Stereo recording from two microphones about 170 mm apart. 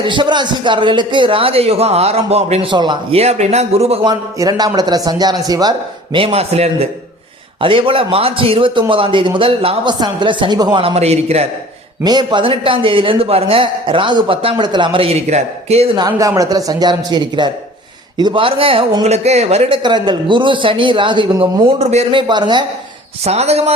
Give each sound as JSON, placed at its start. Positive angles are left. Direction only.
{"t": 0.0, "sound": "a man's voice", "side_deg": -30}
{"t": 4.1, "sound": "a man's voice", "side_deg": -25}
{"t": 6.1, "sound": "a man's voice", "side_deg": -35}
{"t": 12.0, "sound": "a man's voice", "side_deg": -25}
{"t": 16.0, "sound": "a man's voice", "side_deg": -20}
{"t": 22.3, "sound": "a man's voice", "side_deg": -25}
{"t": 23.2, "sound": "a man's voice", "side_deg": -40}